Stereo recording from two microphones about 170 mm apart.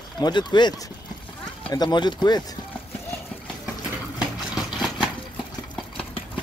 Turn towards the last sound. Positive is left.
turn(degrees=-5)  # may be behind; listen again after turning